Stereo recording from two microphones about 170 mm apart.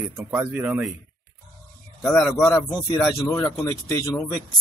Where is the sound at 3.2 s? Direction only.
20° left (ahead or behind).